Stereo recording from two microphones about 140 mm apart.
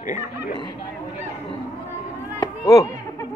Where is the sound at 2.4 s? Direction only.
25° left (ahead or behind).